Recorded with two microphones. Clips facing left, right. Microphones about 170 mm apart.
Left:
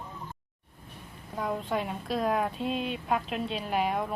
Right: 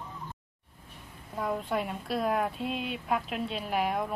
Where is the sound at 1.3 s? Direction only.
Centre (ahead or behind).